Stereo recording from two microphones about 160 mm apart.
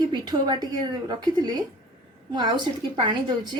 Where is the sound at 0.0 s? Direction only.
25° right (ahead or behind).